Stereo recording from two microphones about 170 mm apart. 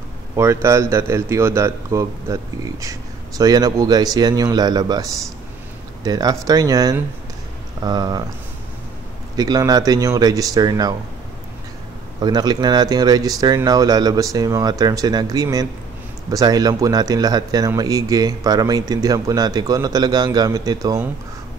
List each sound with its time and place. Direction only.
0.4 s speech: 15° right (ahead or behind)
6.0 s speech: 20° right (ahead or behind)
9.4 s speech: 20° right (ahead or behind)
12.2 s speech: 25° right (ahead or behind)